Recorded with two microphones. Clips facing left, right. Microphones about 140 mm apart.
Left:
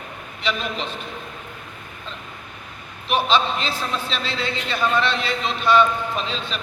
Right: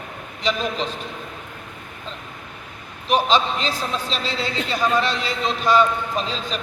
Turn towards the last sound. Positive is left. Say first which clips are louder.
# right 2 dB
turn(degrees=-40)  # may be behind; listen again after turning